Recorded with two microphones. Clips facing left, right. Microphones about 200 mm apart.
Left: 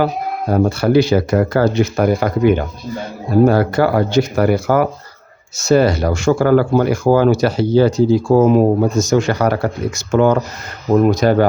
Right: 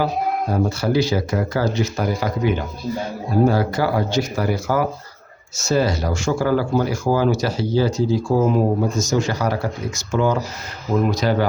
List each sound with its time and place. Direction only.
0.5 s speech: 60° left (ahead or behind)
10.9 s speech: 50° left (ahead or behind)